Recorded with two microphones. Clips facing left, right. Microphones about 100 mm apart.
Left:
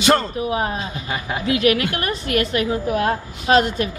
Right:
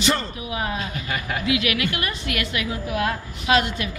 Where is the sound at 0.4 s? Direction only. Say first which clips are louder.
Left 5 dB; 40° left (ahead or behind).